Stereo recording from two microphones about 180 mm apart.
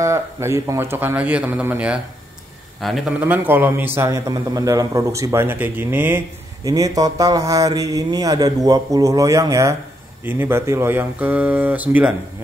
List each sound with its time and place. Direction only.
0.0 s a man's voice: 15° right (ahead or behind)